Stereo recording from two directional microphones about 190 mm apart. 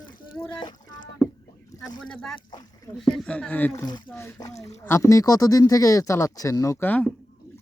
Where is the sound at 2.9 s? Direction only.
Centre (ahead or behind).